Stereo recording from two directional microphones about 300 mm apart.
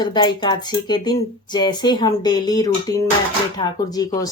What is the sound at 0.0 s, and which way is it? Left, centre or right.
Speech, centre.